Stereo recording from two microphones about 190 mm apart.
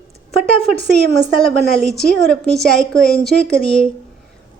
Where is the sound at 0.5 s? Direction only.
30° left (ahead or behind).